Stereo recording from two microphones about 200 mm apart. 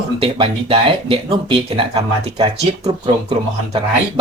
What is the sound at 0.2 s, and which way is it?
Speech, 30° right (ahead or behind).